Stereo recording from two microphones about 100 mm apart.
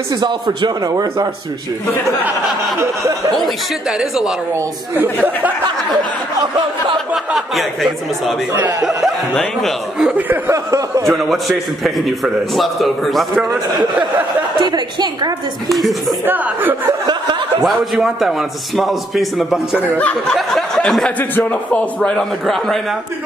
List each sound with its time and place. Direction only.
0.1 s a man's voice: 45° right (ahead or behind)
4.0 s a man's voice: 5° right (ahead or behind)
7.3 s a man's voice: centre (ahead or behind)
10.2 s a sound: 20° right (ahead or behind)
10.5 s speech: 35° right (ahead or behind)
11.1 s a man's voice: centre (ahead or behind)
14.6 s a man's voice: 45° right (ahead or behind)
15.7 s a man's voice: centre (ahead or behind)
17.0 s snicker: 45° right (ahead or behind)
17.6 s a man's voice: 5° right (ahead or behind)
20.0 s a man's voice: 15° left (ahead or behind)
20.3 s a man's voice: 5° left (ahead or behind)
21.2 s a man's voice: 15° left (ahead or behind)